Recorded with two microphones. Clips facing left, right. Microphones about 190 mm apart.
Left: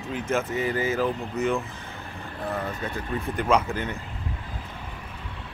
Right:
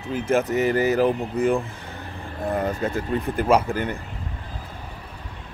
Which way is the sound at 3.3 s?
5° right (ahead or behind).